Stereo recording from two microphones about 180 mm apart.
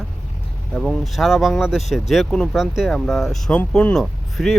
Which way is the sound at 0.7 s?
Centre (ahead or behind).